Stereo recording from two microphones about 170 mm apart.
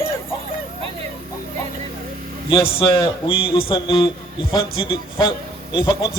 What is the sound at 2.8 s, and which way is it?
A man's voice, 25° left (ahead or behind).